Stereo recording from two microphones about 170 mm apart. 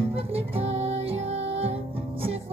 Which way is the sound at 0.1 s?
35° right (ahead or behind).